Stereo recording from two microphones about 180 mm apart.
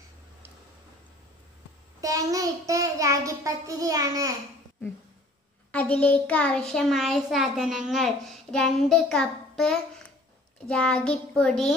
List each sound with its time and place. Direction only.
2.0 s a child's voice: 20° right (ahead or behind)
5.7 s a child's voice: 10° left (ahead or behind)